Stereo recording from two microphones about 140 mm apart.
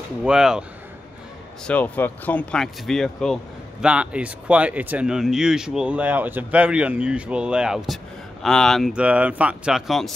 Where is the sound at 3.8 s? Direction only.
10° right (ahead or behind).